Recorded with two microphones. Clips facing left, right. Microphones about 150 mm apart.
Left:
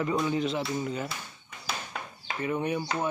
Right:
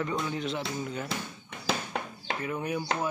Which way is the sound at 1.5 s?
65° right (ahead or behind).